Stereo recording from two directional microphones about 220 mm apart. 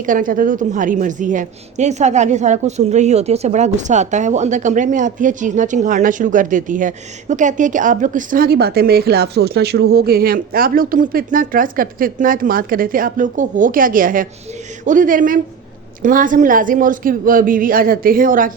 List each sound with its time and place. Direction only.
0.0 s a woman's voice: 40° right (ahead or behind)